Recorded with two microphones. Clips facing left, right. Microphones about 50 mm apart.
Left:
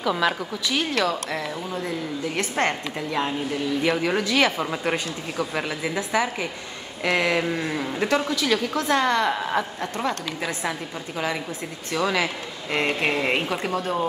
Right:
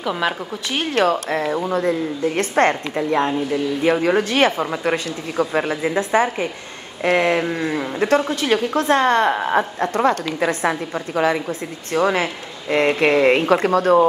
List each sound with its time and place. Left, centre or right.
0.0 s a woman's voice: centre
0.7 s a woman's voice: right
5.7 s speech: right
5.9 s a woman's voice: right
7.3 s sheep: centre
8.3 s a woman's voice: right
13.5 s speech: right